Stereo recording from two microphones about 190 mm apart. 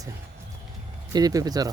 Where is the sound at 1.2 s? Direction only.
20° right (ahead or behind).